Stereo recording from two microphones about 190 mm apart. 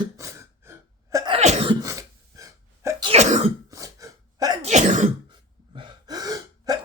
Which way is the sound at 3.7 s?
15° right (ahead or behind).